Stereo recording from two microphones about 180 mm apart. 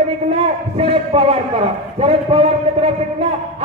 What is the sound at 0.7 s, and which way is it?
A man's voice, 35° right (ahead or behind).